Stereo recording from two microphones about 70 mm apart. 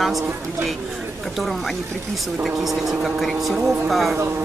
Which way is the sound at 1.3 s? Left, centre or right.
Centre.